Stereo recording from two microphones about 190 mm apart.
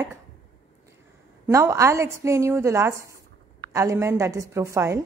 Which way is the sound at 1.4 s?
15° right (ahead or behind).